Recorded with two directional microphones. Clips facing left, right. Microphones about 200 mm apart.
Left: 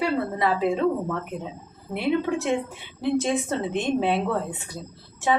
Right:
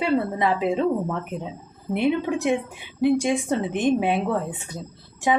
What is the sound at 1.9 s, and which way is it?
A woman's voice, 15° right (ahead or behind).